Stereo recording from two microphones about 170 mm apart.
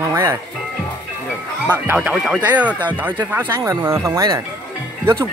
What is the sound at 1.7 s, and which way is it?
Speech, 10° right (ahead or behind).